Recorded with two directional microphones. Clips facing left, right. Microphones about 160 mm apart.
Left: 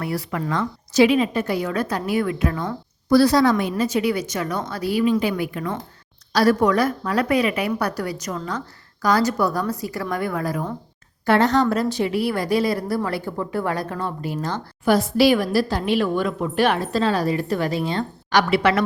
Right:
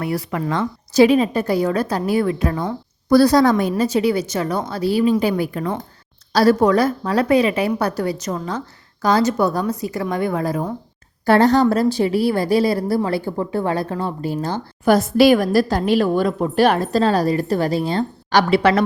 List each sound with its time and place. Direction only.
0.0 s a woman's voice: 20° right (ahead or behind)
0.9 s a woman's voice: 40° right (ahead or behind)
3.1 s a woman's voice: 45° right (ahead or behind)
14.8 s a woman's voice: 45° right (ahead or behind); by 18.8 s 30° right (ahead or behind)